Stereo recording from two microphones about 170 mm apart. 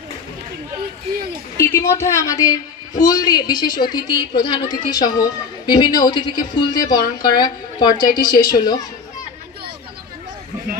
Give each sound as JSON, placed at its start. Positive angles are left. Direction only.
{"t": 1.6, "sound": "speech", "side_deg": 15}